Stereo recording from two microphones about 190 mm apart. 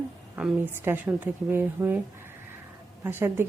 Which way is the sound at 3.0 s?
10° right (ahead or behind).